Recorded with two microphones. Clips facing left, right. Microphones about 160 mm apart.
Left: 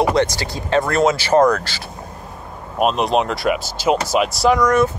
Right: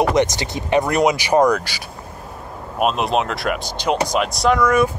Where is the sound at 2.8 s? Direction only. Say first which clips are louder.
Left 2 dB; centre (ahead or behind).